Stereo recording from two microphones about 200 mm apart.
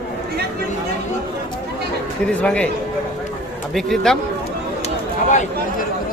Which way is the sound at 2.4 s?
5° left (ahead or behind).